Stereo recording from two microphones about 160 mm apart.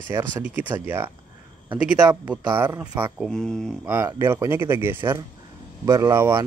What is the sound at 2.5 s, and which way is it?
Speech, 15° right (ahead or behind).